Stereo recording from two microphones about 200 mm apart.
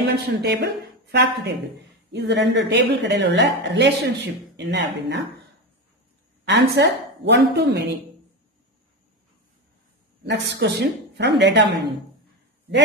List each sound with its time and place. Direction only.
0.1 s a woman's voice: 55° right (ahead or behind)
6.4 s a woman's voice: 55° right (ahead or behind)
10.2 s a woman's voice: 60° right (ahead or behind)